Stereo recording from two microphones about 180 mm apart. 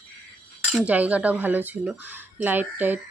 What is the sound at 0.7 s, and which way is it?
Speech, 5° right (ahead or behind).